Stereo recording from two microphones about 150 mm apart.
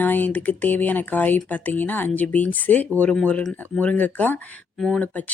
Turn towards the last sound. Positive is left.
turn(degrees=10)  # may be behind; listen again after turning